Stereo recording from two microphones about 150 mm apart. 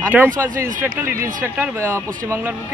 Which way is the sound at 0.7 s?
60° right (ahead or behind).